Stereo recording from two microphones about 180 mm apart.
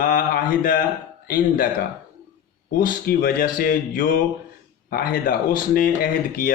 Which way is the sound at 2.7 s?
55° left (ahead or behind).